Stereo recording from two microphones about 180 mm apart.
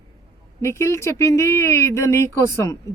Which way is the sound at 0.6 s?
15° left (ahead or behind).